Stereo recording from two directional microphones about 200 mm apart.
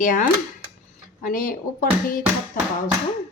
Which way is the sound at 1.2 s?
45° left (ahead or behind).